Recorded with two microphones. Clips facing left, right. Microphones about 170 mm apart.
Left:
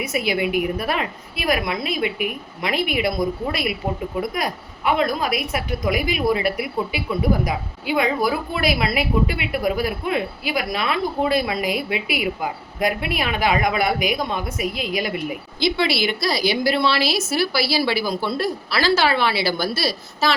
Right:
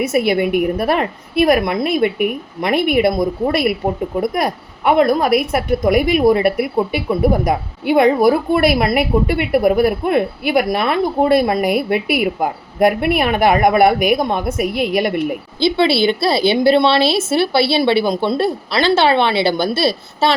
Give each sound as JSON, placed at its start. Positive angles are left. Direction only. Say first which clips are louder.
{"t": 0.0, "sound": "a woman's voice", "louder": "right 7 dB", "side_deg": -50}
{"t": 15.6, "sound": "a woman's voice", "louder": "right 7 dB", "side_deg": -30}